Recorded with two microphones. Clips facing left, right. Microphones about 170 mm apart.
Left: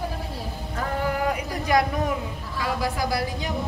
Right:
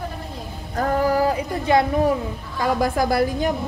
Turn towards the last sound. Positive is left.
turn(degrees=-50)  # may be behind; listen again after turning